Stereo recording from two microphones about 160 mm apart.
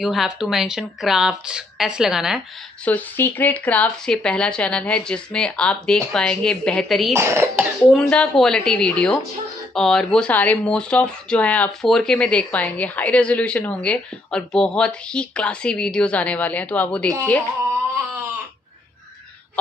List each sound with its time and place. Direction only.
0.0 s speech: centre (ahead or behind)
2.8 s speech: 10° left (ahead or behind)
7.2 s speech: 15° right (ahead or behind)
7.9 s speech: 5° left (ahead or behind)